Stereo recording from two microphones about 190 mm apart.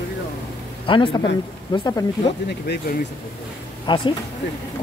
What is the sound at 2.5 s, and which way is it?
Speech, 60° left (ahead or behind).